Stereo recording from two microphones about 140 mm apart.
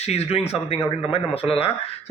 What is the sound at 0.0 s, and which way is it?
Speech, 50° left (ahead or behind).